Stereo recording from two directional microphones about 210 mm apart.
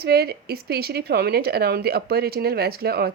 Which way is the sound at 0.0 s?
50° right (ahead or behind).